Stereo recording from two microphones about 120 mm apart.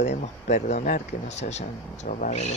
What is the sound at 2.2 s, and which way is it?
Speech, 90° left.